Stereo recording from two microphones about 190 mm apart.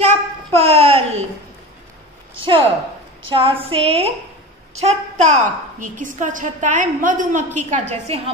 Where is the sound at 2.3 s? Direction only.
30° right (ahead or behind).